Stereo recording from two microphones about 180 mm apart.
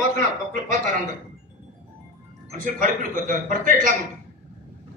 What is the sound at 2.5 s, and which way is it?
A man's voice, 50° right (ahead or behind).